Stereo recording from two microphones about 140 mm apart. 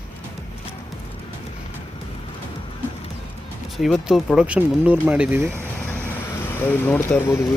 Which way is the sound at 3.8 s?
Centre (ahead or behind).